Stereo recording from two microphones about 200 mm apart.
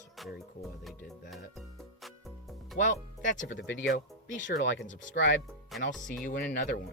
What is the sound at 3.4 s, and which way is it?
Speech, 65° left (ahead or behind).